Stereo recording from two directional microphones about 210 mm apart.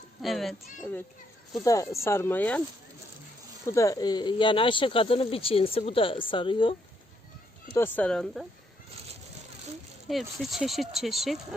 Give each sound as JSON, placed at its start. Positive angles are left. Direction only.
{"t": 0.2, "sound": "speech", "side_deg": 0}
{"t": 1.6, "sound": "speech", "side_deg": 15}
{"t": 3.7, "sound": "speech", "side_deg": 15}
{"t": 7.8, "sound": "speech", "side_deg": 5}
{"t": 10.1, "sound": "speech", "side_deg": 0}